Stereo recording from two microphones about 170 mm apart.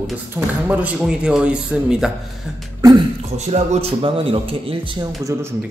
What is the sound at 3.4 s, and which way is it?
A man's voice, 40° right (ahead or behind).